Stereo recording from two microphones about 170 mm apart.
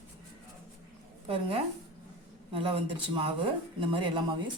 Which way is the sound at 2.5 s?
30° right (ahead or behind).